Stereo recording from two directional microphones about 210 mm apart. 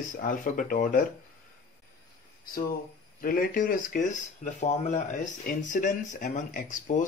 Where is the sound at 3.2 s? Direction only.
40° left (ahead or behind).